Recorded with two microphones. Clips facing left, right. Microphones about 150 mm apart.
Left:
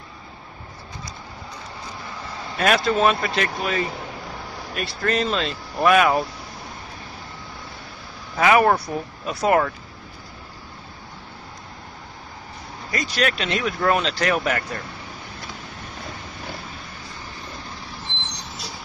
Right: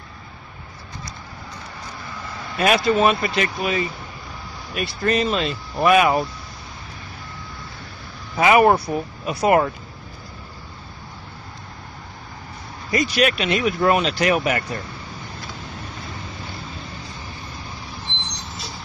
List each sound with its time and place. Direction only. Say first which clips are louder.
2.5 s speech: right 2 dB; 5° right (ahead or behind)
8.4 s speech: right 2 dB; 10° right (ahead or behind)
12.9 s speech: right 4 dB; 10° right (ahead or behind)